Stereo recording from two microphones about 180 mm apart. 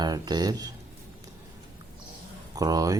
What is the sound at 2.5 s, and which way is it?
Speech, 20° right (ahead or behind).